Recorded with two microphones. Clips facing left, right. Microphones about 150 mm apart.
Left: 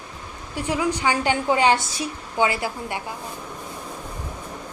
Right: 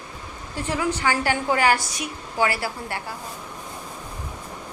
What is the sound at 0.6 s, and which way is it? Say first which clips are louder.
A woman's voice: left 2 dB; 15° left (ahead or behind).